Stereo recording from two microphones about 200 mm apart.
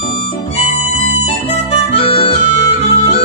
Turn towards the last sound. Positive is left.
turn(degrees=35)  # may be behind; listen again after turning